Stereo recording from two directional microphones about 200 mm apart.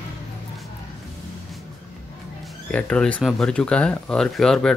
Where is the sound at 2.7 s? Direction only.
5° left (ahead or behind).